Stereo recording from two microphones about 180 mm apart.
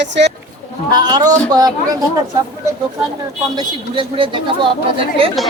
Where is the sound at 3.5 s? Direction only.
30° right (ahead or behind).